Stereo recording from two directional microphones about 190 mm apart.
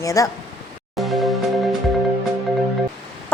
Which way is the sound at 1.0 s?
Centre (ahead or behind).